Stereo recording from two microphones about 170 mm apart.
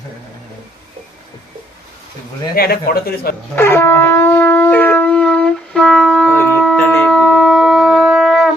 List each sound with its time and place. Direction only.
2.6 s a man's voice: 60° left (ahead or behind)
3.5 s shofar: 15° left (ahead or behind)